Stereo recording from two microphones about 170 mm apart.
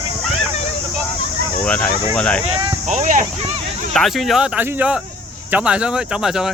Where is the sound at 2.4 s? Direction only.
35° right (ahead or behind).